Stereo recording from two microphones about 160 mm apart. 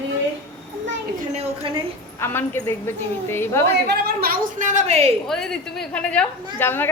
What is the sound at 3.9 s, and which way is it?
A woman's voice, 75° right (ahead or behind).